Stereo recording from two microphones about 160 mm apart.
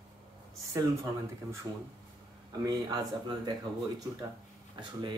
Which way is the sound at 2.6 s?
25° right (ahead or behind).